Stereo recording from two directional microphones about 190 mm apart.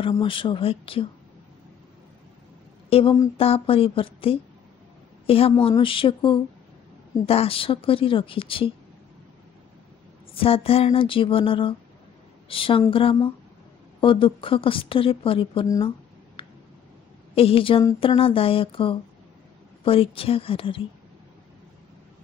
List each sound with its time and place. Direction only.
0.1 s a woman's voice: 25° left (ahead or behind)
2.9 s a woman's voice: 30° left (ahead or behind)
10.3 s a woman's voice: 30° left (ahead or behind)
16.4 s a sound: 25° left (ahead or behind)
17.4 s a woman's voice: 30° left (ahead or behind)